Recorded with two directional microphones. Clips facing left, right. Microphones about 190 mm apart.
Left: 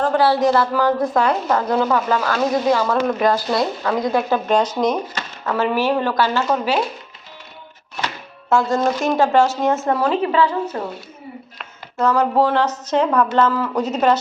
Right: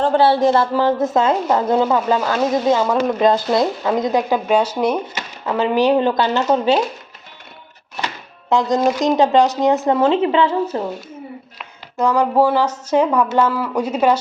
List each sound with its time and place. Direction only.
0.0 s a woman's voice: 30° right (ahead or behind)
8.0 s speech: 15° right (ahead or behind)
11.5 s speech: 15° right (ahead or behind)